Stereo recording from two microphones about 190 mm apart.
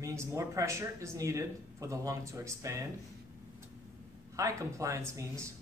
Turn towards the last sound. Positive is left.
turn(degrees=-15)  # may be behind; listen again after turning